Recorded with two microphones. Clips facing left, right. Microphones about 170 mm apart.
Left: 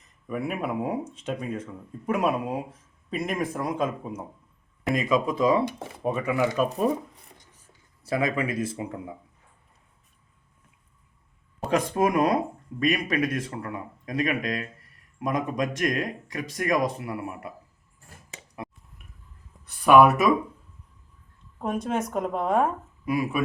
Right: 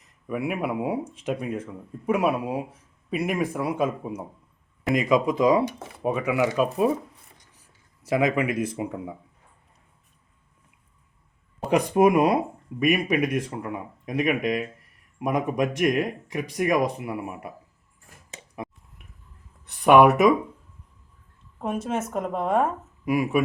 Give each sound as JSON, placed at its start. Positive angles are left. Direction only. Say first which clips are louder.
{"t": 0.3, "sound": "speech", "louder": "right 2 dB", "side_deg": -5}
{"t": 8.0, "sound": "speech", "louder": "right 3 dB", "side_deg": -15}
{"t": 11.7, "sound": "speech", "louder": "right 4 dB", "side_deg": -15}
{"t": 18.5, "sound": "a sound", "louder": "right 3 dB", "side_deg": -15}
{"t": 19.8, "sound": "speech", "louder": "right 2 dB", "side_deg": -20}
{"t": 21.6, "sound": "a woman's voice", "louder": "even", "side_deg": 0}
{"t": 23.0, "sound": "speech", "louder": "right 3 dB", "side_deg": -15}